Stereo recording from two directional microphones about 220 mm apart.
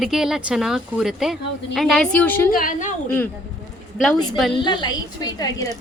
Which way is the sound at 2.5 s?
40° left (ahead or behind).